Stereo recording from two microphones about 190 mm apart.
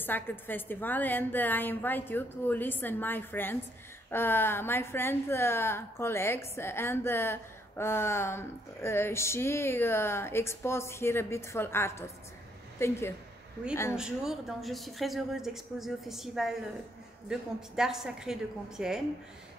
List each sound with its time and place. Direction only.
0.0 s a woman's voice: 10° left (ahead or behind)
13.9 s speech: 5° right (ahead or behind)